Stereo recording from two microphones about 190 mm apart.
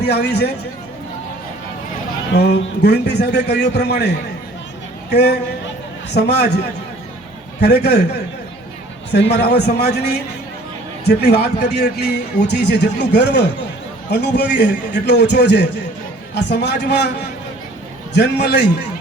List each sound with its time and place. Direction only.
0.0 s a man's voice: 60° left (ahead or behind)
2.3 s a man's voice: 60° left (ahead or behind)
5.1 s a man's voice: 60° left (ahead or behind)
7.6 s a man's voice: 60° left (ahead or behind)
9.3 s a man's voice: 60° left (ahead or behind)